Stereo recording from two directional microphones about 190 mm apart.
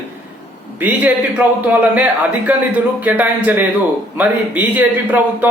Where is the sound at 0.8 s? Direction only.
10° right (ahead or behind).